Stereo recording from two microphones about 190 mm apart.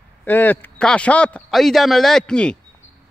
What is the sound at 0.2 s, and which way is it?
A man's voice, 10° left (ahead or behind).